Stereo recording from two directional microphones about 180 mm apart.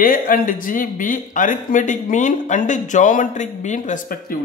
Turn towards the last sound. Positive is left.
turn(degrees=50)  # may be behind; listen again after turning